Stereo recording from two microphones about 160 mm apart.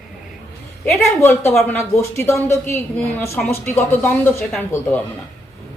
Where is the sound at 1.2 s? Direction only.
15° left (ahead or behind).